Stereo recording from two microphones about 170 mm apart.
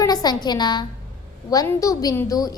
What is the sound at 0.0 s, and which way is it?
A woman's voice, 25° left (ahead or behind).